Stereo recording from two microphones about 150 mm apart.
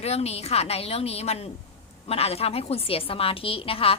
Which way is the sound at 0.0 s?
45° left (ahead or behind).